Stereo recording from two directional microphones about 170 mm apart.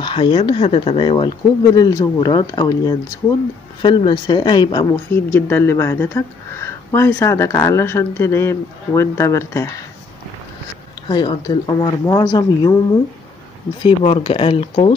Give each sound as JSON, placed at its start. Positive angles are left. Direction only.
{"t": 0.0, "sound": "speech", "side_deg": 30}
{"t": 5.1, "sound": "speech", "side_deg": 15}
{"t": 11.1, "sound": "speech", "side_deg": 25}
{"t": 13.8, "sound": "speech", "side_deg": 35}